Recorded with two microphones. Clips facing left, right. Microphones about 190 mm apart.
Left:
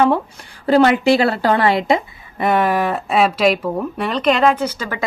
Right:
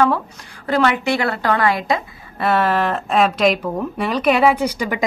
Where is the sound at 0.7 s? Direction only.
30° left (ahead or behind).